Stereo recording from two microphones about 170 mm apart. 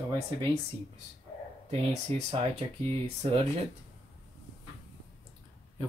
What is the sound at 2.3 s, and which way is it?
Speech, 35° right (ahead or behind).